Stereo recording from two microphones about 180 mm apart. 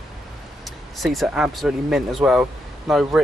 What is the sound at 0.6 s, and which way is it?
Speech, centre (ahead or behind).